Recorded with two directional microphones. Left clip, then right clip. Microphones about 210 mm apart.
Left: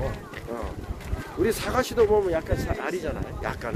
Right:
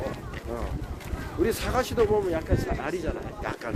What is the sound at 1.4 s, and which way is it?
Speech, 15° left (ahead or behind).